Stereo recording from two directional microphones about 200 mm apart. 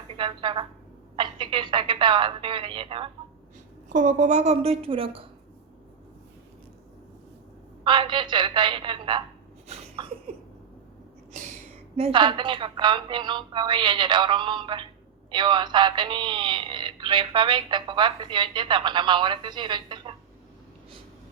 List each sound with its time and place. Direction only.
0.1 s speech: 25° right (ahead or behind)
3.8 s speech: 40° right (ahead or behind)
7.9 s speech: 25° right (ahead or behind)
9.6 s sneeze: 25° right (ahead or behind)
11.9 s speech: 25° right (ahead or behind)